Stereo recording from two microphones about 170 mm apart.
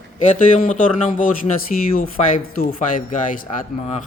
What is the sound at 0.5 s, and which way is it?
A man's voice, 50° left (ahead or behind).